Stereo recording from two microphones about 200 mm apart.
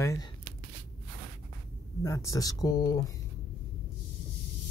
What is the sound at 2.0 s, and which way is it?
Speech, 15° left (ahead or behind).